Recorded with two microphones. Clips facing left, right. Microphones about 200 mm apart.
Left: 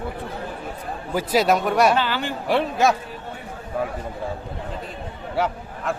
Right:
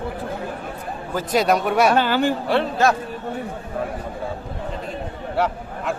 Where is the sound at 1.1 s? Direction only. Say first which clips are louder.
Even; 5° left (ahead or behind).